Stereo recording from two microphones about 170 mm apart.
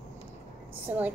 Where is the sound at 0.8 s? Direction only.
10° right (ahead or behind).